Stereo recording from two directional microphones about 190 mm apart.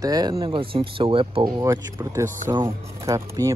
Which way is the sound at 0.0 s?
20° right (ahead or behind).